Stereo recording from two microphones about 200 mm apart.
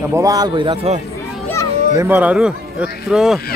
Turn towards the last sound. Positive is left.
turn(degrees=0)  # may be behind; listen again after turning